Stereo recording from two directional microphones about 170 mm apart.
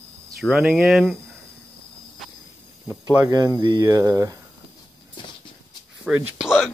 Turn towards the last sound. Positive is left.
turn(degrees=-5)  # may be behind; listen again after turning